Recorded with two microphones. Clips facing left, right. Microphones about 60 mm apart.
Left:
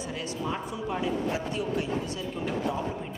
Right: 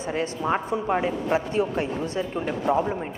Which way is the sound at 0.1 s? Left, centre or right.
Right.